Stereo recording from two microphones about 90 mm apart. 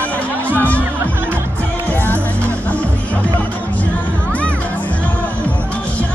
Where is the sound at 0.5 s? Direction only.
15° left (ahead or behind).